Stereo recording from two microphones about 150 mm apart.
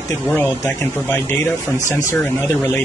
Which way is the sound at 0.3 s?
10° left (ahead or behind).